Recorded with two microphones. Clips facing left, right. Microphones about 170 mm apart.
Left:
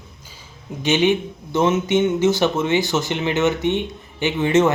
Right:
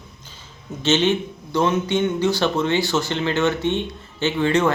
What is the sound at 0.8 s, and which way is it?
Speech, 15° left (ahead or behind).